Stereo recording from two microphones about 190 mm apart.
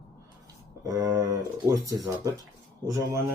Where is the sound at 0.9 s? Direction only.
15° right (ahead or behind).